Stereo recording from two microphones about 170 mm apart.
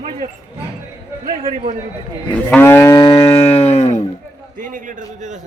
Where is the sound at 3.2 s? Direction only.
35° left (ahead or behind).